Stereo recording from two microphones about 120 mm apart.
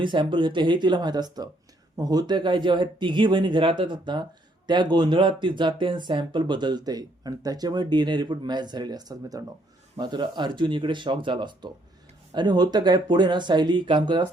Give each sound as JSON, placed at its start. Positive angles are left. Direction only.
{"t": 0.0, "sound": "speech", "side_deg": -40}